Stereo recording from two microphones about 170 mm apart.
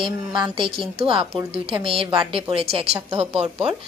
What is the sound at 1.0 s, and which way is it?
A woman's voice, 30° right (ahead or behind).